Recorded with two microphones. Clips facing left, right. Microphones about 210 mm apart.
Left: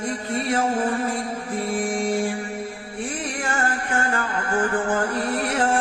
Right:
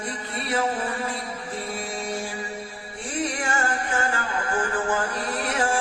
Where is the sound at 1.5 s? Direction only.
50° left (ahead or behind).